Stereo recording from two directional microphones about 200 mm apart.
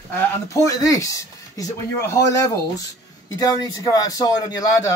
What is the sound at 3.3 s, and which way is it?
Speech, 20° left (ahead or behind).